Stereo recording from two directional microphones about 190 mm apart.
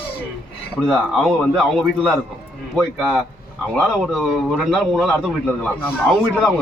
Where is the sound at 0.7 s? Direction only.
Centre (ahead or behind).